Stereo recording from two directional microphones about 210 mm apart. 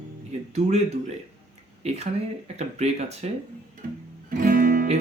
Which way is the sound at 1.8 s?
30° right (ahead or behind).